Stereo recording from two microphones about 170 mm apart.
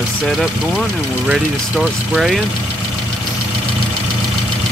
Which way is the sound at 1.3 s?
Centre (ahead or behind).